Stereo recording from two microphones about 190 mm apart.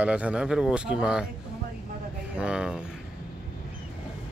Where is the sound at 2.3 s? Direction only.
5° right (ahead or behind).